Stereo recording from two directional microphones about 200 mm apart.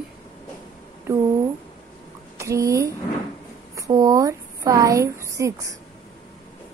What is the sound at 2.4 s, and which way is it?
A woman's voice, 15° right (ahead or behind).